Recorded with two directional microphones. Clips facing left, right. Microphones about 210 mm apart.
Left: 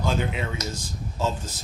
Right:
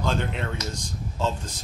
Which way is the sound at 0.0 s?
5° left (ahead or behind).